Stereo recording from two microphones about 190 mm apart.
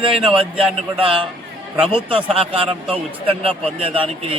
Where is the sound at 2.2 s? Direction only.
30° right (ahead or behind).